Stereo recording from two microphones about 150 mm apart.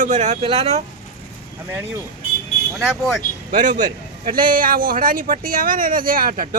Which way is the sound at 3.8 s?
70° right (ahead or behind).